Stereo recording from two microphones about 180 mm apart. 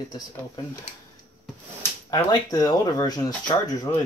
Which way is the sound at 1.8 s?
20° left (ahead or behind).